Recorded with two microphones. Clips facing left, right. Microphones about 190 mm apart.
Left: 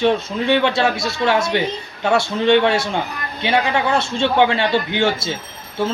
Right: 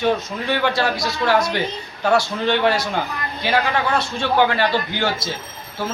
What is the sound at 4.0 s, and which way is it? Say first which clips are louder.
Speech: left 2 dB; 25° left (ahead or behind).